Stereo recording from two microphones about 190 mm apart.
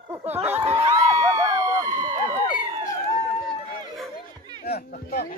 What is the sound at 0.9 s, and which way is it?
Crowd, 20° right (ahead or behind).